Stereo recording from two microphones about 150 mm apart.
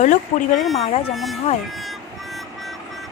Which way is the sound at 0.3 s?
50° left (ahead or behind).